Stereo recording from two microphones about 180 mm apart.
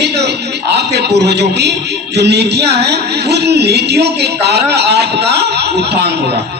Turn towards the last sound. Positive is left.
turn(degrees=-65)  # may be behind; listen again after turning